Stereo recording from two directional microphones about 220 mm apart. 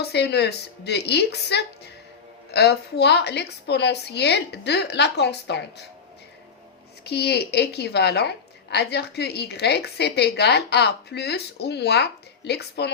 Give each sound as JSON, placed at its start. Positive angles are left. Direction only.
{"t": 0.0, "sound": "a woman's voice", "side_deg": 50}
{"t": 7.0, "sound": "a woman's voice", "side_deg": 45}